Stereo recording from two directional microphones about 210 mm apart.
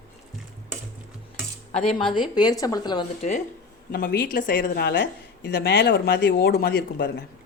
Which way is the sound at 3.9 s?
50° left (ahead or behind).